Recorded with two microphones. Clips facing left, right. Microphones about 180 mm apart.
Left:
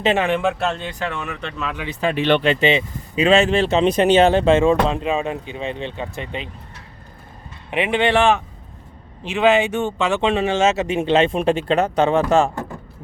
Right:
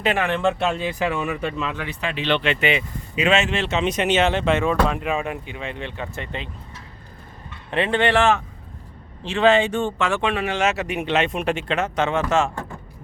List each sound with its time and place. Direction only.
0.0 s speech: 25° left (ahead or behind)
0.3 s speech: 5° left (ahead or behind)
0.7 s speech: 5° right (ahead or behind)
1.7 s speech: 15° left (ahead or behind)
2.0 s speech: 45° left (ahead or behind); by 6.5 s 15° left (ahead or behind)
7.7 s speech: 15° left (ahead or behind); by 12.5 s 35° left (ahead or behind)